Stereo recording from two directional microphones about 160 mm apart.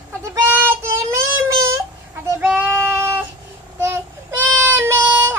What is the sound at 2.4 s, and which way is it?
Child singing, 10° right (ahead or behind).